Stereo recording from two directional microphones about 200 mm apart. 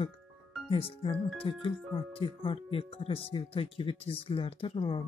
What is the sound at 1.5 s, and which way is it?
Speech, 25° left (ahead or behind).